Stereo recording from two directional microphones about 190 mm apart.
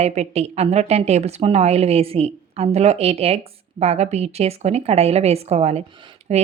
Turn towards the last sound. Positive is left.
turn(degrees=-35)  # may be behind; listen again after turning